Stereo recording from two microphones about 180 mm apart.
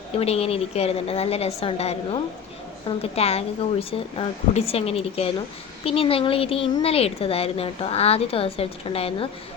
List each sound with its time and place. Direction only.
0.2 s speech: 35° left (ahead or behind)